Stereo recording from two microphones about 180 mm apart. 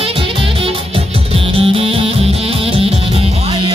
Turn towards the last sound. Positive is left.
turn(degrees=-30)  # may be behind; listen again after turning